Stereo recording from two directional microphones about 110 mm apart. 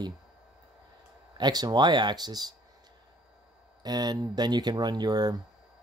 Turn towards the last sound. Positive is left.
turn(degrees=-40)  # may be behind; listen again after turning